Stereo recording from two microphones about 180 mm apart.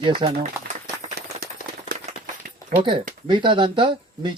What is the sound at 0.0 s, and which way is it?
Speech, 25° right (ahead or behind).